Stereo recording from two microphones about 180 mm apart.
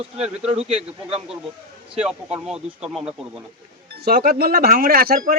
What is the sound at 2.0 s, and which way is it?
Speech, 5° right (ahead or behind).